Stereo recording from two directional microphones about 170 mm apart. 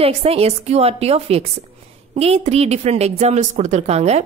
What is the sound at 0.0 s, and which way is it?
Speech, 35° right (ahead or behind).